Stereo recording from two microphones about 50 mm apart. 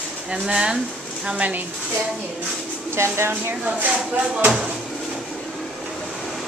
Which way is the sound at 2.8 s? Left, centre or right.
Right.